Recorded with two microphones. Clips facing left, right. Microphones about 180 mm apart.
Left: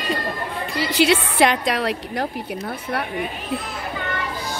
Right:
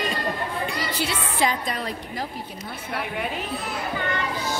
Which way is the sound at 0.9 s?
80° left.